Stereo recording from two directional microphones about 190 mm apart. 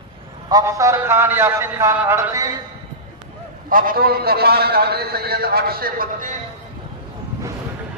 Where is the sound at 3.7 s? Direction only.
50° right (ahead or behind).